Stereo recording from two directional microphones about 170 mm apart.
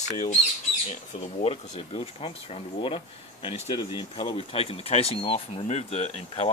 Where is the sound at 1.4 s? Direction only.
35° left (ahead or behind).